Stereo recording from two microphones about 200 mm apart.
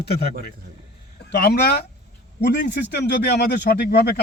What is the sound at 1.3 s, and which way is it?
A man's voice, 55° left (ahead or behind).